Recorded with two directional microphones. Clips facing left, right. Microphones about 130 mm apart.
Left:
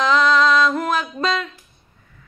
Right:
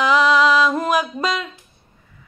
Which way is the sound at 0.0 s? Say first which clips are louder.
Right 1 dB; 10° right (ahead or behind).